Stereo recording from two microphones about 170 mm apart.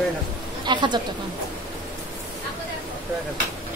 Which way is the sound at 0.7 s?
25° right (ahead or behind).